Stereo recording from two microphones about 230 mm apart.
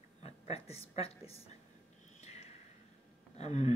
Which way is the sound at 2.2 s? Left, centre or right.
Left.